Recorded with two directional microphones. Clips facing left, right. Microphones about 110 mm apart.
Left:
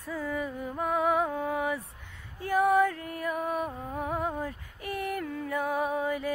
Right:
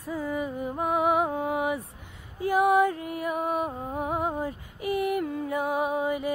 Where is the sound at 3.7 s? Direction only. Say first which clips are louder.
Right 3 dB; 35° right (ahead or behind).